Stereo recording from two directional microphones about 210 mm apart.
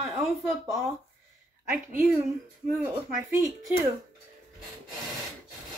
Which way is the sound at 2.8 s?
5° right (ahead or behind).